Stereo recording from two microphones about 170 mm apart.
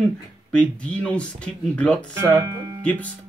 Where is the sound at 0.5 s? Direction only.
5° left (ahead or behind).